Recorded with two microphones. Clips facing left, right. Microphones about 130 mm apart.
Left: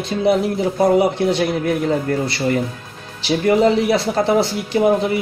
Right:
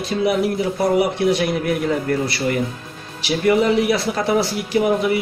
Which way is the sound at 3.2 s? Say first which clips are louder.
Left 2 dB; 30° left (ahead or behind).